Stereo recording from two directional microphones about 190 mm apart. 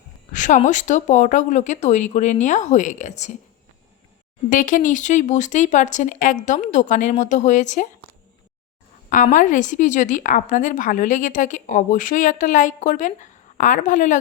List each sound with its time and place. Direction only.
0.3 s speech: 40° left (ahead or behind)
4.4 s speech: 45° left (ahead or behind)
9.0 s speech: 45° left (ahead or behind)